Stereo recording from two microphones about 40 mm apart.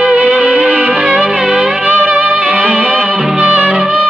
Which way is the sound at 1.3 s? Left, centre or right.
Centre.